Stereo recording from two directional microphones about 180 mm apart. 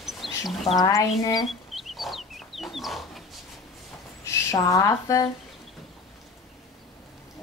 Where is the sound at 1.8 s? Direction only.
Centre (ahead or behind).